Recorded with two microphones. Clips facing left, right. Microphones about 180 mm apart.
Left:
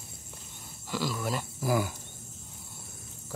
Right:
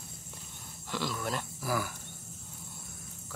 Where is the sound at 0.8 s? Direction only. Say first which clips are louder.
Left 3 dB; 5° left (ahead or behind).